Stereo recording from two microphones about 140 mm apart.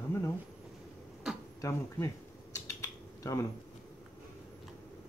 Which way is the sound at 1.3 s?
5° right (ahead or behind).